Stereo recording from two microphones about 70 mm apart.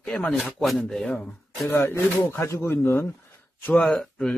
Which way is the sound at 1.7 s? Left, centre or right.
Left.